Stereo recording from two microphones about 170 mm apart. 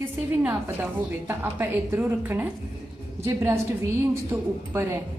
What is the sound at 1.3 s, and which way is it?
A woman's voice, 10° right (ahead or behind).